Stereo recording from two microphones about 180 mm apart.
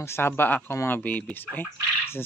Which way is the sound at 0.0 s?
15° left (ahead or behind).